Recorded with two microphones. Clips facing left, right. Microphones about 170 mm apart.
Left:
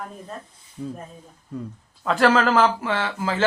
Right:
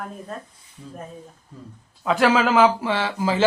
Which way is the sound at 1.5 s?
70° left (ahead or behind).